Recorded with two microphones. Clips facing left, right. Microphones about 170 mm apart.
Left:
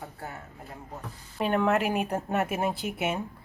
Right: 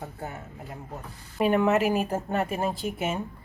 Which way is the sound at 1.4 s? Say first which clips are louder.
Right 3 dB; 5° right (ahead or behind).